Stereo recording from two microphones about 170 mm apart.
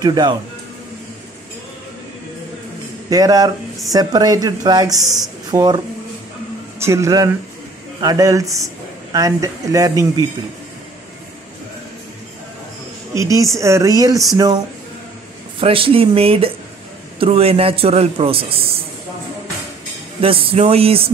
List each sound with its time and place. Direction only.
0.0 s speech: 25° right (ahead or behind)
3.1 s speech: 20° right (ahead or behind)
6.8 s speech: 15° right (ahead or behind)
13.1 s speech: 20° right (ahead or behind)
15.6 s a man's voice: 30° right (ahead or behind)
20.2 s a man's voice: 35° right (ahead or behind)